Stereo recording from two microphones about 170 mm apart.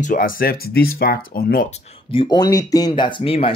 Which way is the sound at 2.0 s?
30° left (ahead or behind).